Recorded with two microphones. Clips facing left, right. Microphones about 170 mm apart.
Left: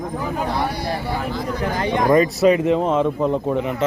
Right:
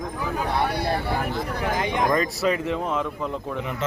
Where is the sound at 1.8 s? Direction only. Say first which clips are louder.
Left 6 dB; 15° right (ahead or behind).